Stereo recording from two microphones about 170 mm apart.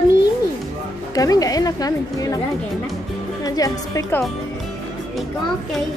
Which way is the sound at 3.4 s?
20° left (ahead or behind).